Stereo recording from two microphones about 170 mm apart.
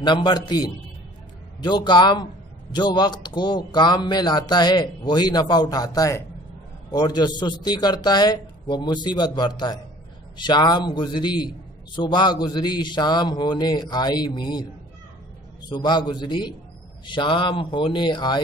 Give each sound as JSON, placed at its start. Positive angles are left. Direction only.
{"t": 0.0, "sound": "a man's voice", "side_deg": 25}
{"t": 15.7, "sound": "a man's voice", "side_deg": 25}